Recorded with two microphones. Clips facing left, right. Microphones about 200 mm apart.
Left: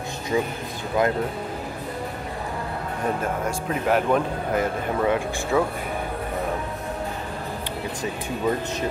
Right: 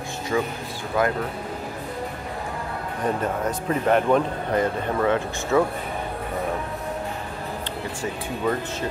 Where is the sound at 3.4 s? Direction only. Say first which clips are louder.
Right 3 dB; 5° left (ahead or behind).